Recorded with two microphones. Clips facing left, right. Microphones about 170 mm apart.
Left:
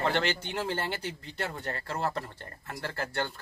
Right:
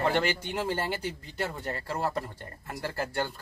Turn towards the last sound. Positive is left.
turn(degrees=-10)  # may be behind; listen again after turning